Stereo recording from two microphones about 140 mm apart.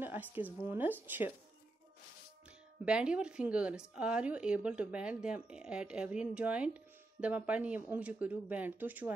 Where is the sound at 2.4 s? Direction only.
5° right (ahead or behind).